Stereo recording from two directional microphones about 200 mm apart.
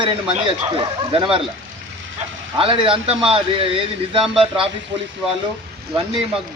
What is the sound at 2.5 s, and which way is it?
Speech, 25° right (ahead or behind).